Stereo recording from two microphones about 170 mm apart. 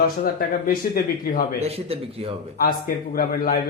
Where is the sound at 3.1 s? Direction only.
60° left (ahead or behind).